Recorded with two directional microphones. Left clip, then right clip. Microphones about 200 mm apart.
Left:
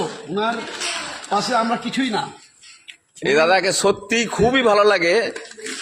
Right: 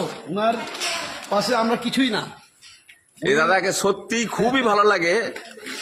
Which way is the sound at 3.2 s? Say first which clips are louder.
Left 3 dB; 10° left (ahead or behind).